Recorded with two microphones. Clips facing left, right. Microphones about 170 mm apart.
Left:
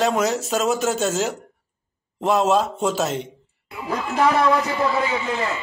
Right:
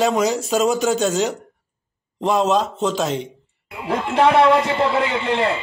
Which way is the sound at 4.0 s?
30° right (ahead or behind).